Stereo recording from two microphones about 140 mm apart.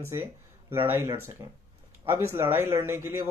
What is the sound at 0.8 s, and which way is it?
Speech, 15° right (ahead or behind).